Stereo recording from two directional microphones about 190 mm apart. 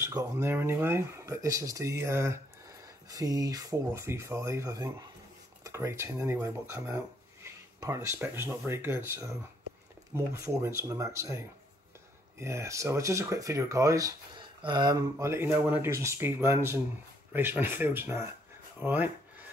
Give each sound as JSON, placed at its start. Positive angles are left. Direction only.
{"t": 0.0, "sound": "speech", "side_deg": -15}